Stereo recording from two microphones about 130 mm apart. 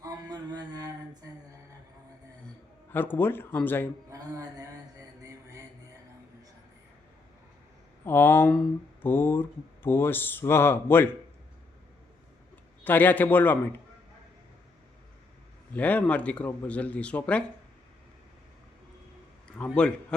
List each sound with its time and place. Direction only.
0.0 s a sound: 35° right (ahead or behind)
2.9 s speech: 15° left (ahead or behind)
4.1 s mantra: 25° right (ahead or behind)
5.2 s music: 20° right (ahead or behind)
8.0 s speech: 15° left (ahead or behind)
12.8 s speech: 15° left (ahead or behind)
15.7 s speech: 10° left (ahead or behind)
19.5 s speech: 5° left (ahead or behind)